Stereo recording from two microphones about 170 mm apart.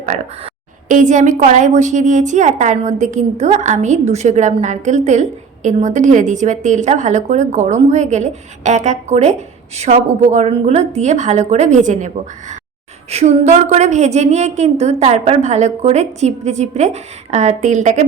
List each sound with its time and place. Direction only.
0.9 s a woman's voice: 45° right (ahead or behind)